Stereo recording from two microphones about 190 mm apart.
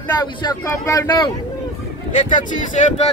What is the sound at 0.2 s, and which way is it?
Speech, 20° left (ahead or behind).